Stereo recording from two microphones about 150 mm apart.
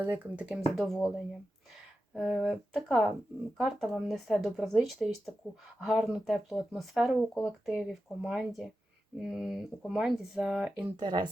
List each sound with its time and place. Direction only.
0.0 s speech: 10° right (ahead or behind)
2.1 s speech: centre (ahead or behind)
10.9 s speech: 30° right (ahead or behind)